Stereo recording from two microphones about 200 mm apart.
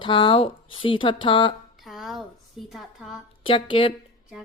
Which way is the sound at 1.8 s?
Centre (ahead or behind).